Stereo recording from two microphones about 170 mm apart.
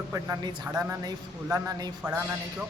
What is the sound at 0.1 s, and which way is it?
Speech, 20° right (ahead or behind).